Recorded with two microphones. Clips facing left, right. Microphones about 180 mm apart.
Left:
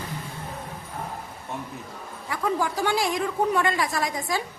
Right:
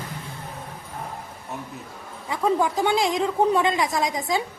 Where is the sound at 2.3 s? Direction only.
20° right (ahead or behind).